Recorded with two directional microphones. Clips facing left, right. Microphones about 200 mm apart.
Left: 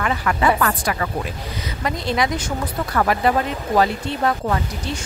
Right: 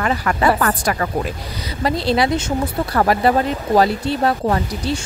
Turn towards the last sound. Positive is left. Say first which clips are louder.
# right 4 dB
turn(degrees=-35)  # may be behind; listen again after turning